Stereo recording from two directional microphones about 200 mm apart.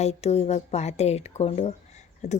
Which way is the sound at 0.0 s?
30° left (ahead or behind).